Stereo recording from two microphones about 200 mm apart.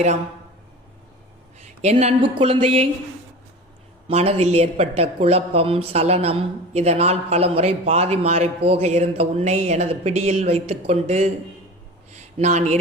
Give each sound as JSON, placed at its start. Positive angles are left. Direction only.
{"t": 1.8, "sound": "a woman's voice", "side_deg": -35}
{"t": 4.1, "sound": "a woman's voice", "side_deg": -30}
{"t": 12.1, "sound": "a sound", "side_deg": -35}